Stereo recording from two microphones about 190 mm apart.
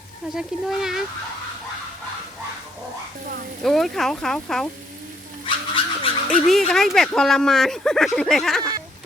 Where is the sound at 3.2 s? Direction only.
50° right (ahead or behind).